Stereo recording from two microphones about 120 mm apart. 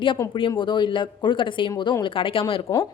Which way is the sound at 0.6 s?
40° left (ahead or behind).